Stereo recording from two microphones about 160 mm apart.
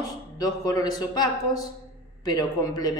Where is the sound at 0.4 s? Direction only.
25° left (ahead or behind).